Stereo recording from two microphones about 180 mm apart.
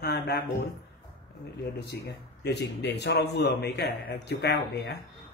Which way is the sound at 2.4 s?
70° left (ahead or behind).